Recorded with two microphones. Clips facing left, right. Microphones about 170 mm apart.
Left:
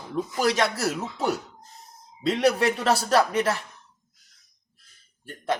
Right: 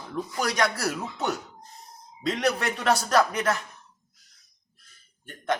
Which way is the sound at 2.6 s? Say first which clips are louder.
Left 2 dB; 30° left (ahead or behind).